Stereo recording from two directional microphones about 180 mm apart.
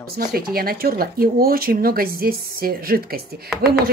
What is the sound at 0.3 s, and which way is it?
Speech, 55° right (ahead or behind).